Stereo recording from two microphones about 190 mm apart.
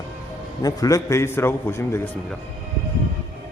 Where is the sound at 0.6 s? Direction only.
20° left (ahead or behind).